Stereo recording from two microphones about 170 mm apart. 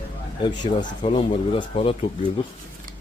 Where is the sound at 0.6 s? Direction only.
45° left (ahead or behind).